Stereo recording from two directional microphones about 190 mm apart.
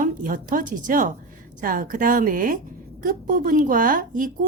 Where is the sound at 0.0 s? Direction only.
45° right (ahead or behind).